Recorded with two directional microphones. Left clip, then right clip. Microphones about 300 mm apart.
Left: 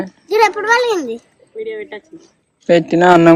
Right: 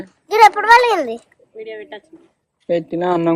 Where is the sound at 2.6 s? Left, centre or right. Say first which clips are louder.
Left 8 dB; left.